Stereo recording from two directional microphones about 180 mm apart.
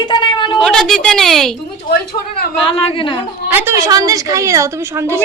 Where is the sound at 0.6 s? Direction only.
Centre (ahead or behind).